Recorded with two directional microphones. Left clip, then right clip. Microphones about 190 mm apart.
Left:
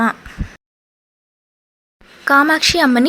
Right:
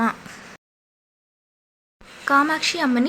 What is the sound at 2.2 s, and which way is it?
Speech, 35° left (ahead or behind).